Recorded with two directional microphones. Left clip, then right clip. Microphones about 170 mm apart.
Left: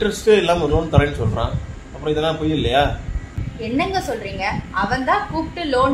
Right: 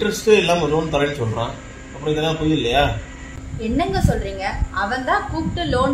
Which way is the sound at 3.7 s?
20° left (ahead or behind).